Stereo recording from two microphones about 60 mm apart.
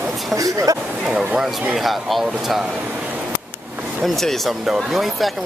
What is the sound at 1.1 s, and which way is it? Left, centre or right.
Speech, centre.